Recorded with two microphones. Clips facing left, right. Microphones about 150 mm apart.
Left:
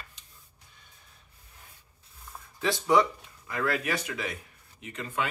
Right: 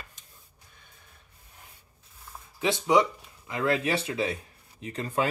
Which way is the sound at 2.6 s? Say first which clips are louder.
Right 1 dB; 20° right (ahead or behind).